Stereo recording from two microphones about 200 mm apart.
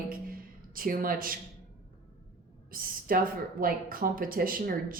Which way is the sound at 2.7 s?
45° right (ahead or behind).